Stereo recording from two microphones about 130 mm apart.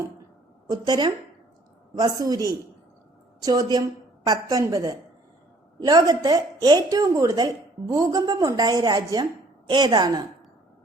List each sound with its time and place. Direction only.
0.7 s a woman's voice: 35° right (ahead or behind)